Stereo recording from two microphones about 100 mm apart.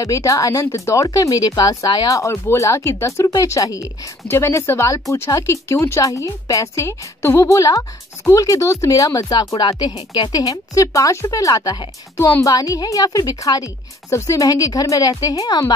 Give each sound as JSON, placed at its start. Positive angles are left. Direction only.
{"t": 0.0, "sound": "speech", "side_deg": 35}